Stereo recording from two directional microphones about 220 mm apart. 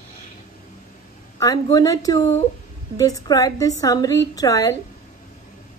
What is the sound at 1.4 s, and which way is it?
A woman's voice, 15° left (ahead or behind).